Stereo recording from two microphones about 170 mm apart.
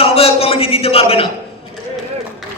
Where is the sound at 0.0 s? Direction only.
35° left (ahead or behind).